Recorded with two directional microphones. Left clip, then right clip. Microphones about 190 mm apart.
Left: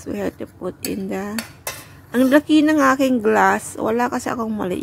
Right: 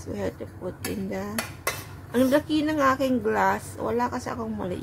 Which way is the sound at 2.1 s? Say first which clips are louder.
Left 7 dB; 35° left (ahead or behind).